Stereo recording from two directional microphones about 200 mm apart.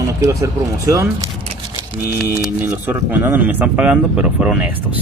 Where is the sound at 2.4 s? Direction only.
10° right (ahead or behind).